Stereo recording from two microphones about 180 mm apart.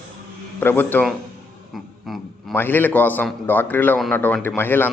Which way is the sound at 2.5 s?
10° left (ahead or behind).